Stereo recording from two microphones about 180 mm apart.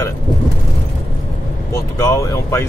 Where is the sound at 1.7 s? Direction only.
15° left (ahead or behind).